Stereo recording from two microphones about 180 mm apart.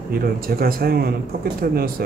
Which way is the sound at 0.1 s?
55° right (ahead or behind).